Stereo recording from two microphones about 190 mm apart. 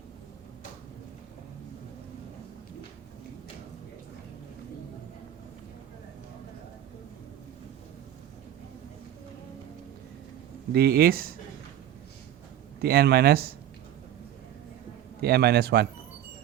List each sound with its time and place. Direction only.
10.8 s speech: 55° right (ahead or behind)
12.8 s a man's voice: 55° right (ahead or behind)
15.2 s a man's voice: 55° right (ahead or behind)